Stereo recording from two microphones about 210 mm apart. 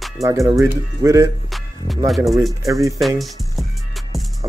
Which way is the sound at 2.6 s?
15° right (ahead or behind).